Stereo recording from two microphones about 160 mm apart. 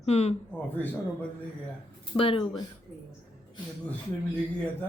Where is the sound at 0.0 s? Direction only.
40° left (ahead or behind).